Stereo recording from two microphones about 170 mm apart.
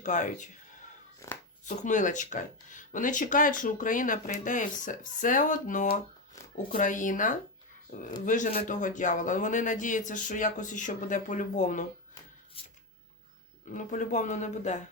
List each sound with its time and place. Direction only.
0.0 s speech: 45° left (ahead or behind)
1.2 s speech: 15° left (ahead or behind)
1.6 s speech: 45° left (ahead or behind)
12.6 s a sound: 35° left (ahead or behind)
13.7 s speech: 50° left (ahead or behind)